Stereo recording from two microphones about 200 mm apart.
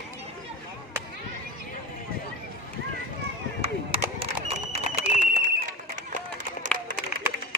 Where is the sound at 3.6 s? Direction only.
30° right (ahead or behind).